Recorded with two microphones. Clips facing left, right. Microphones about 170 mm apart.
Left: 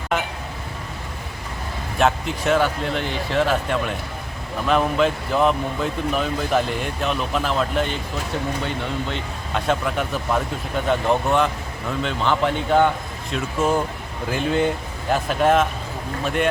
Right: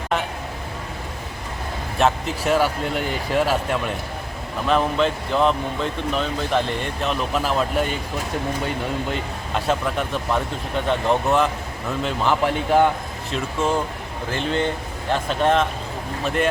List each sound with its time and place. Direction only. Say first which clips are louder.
2.0 s speech: even; centre (ahead or behind)
9.6 s speech: even; centre (ahead or behind)
13.3 s speech: left 1 dB; 10° left (ahead or behind)